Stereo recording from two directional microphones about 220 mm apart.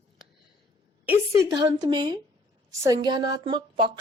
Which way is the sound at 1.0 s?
10° right (ahead or behind).